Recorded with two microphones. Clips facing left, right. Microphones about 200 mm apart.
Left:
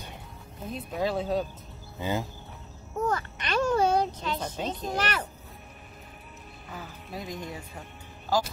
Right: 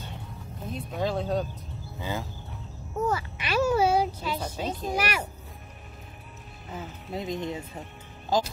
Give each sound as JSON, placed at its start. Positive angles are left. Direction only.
{"t": 0.7, "sound": "speech", "side_deg": 0}
{"t": 2.0, "sound": "speech", "side_deg": 20}
{"t": 3.0, "sound": "a child's voice", "side_deg": -5}
{"t": 6.7, "sound": "speech", "side_deg": -20}